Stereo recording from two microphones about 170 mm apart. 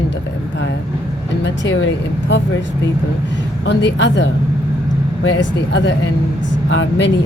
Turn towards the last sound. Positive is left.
turn(degrees=90)